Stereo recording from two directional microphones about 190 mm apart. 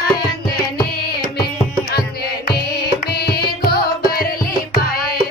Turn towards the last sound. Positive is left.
turn(degrees=55)  # may be behind; listen again after turning